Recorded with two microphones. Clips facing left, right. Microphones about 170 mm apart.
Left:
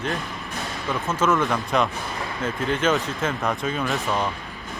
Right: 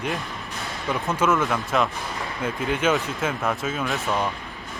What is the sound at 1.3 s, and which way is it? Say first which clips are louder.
A man's voice: left 1 dB; 5° right (ahead or behind).